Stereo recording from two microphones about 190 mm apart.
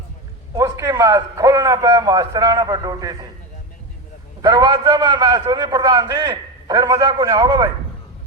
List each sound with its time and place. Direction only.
0.5 s a man's voice: 20° right (ahead or behind)
4.4 s a man's voice: 20° right (ahead or behind)